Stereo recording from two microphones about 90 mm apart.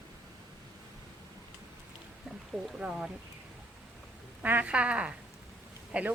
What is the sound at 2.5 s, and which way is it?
Speech, 10° right (ahead or behind).